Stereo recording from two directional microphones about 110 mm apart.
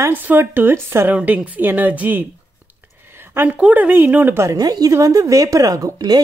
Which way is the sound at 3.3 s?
15° right (ahead or behind).